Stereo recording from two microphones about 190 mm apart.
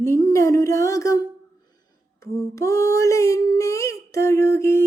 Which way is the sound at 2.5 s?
15° left (ahead or behind).